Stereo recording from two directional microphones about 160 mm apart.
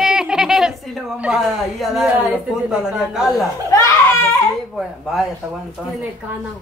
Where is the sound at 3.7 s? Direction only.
20° left (ahead or behind).